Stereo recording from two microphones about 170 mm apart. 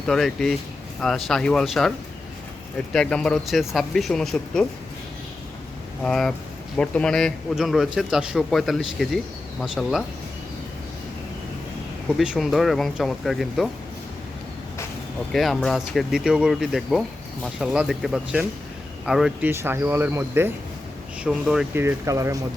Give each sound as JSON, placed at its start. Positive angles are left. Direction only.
{"t": 0.1, "sound": "speech", "side_deg": 5}
{"t": 2.9, "sound": "speech", "side_deg": 5}
{"t": 6.0, "sound": "speech", "side_deg": 5}
{"t": 12.1, "sound": "speech", "side_deg": 0}
{"t": 15.3, "sound": "speech", "side_deg": 0}
{"t": 19.5, "sound": "speech", "side_deg": -15}
{"t": 21.8, "sound": "speech", "side_deg": -15}